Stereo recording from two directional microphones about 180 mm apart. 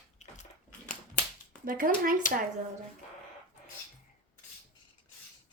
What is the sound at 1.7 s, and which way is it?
Speech, 50° right (ahead or behind).